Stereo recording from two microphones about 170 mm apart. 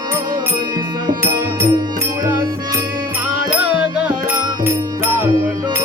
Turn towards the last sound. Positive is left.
turn(degrees=-5)  # may be behind; listen again after turning